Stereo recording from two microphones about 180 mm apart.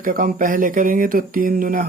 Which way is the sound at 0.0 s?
50° right (ahead or behind).